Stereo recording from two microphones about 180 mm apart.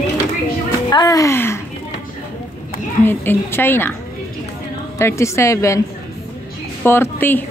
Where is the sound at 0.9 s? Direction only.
20° left (ahead or behind).